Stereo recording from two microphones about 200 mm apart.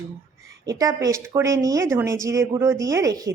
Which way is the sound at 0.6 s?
15° right (ahead or behind).